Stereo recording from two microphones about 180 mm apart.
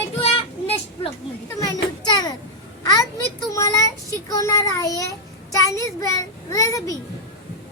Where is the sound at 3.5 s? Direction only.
20° left (ahead or behind).